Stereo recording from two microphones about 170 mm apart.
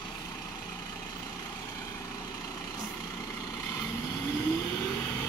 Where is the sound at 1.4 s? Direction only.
20° left (ahead or behind).